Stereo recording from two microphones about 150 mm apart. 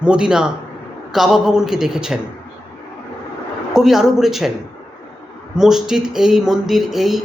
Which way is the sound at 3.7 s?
5° right (ahead or behind).